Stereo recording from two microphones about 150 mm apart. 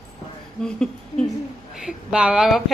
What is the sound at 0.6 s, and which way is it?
A woman's voice, 5° left (ahead or behind).